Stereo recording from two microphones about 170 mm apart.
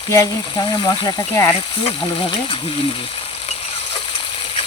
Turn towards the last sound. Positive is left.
turn(degrees=30)  # may be behind; listen again after turning